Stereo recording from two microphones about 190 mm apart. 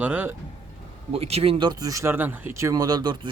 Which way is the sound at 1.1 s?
35° right (ahead or behind).